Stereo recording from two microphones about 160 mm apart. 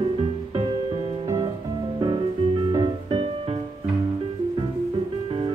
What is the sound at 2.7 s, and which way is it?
Music, 30° right (ahead or behind).